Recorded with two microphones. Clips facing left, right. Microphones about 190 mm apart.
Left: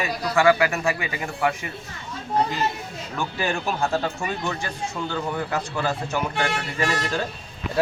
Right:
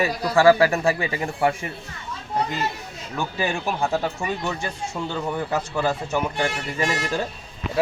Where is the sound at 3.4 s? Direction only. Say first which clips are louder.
Even; 15° right (ahead or behind).